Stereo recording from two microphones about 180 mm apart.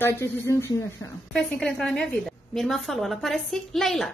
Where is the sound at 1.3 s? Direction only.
Centre (ahead or behind).